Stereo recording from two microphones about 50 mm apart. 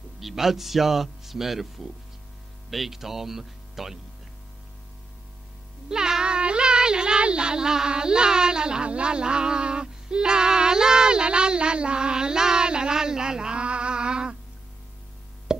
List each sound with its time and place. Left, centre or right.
0.2 s speech: centre
5.9 s speech: centre